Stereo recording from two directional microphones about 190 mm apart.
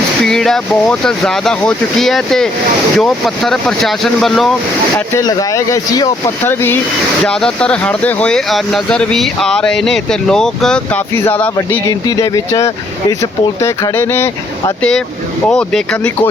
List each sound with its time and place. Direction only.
0.2 s speech: centre (ahead or behind)
4.9 s speech: 15° left (ahead or behind)